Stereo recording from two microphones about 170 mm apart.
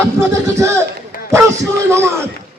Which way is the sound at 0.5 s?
15° right (ahead or behind).